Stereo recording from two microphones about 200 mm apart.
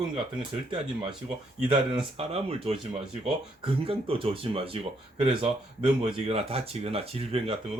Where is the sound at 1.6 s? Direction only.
25° right (ahead or behind).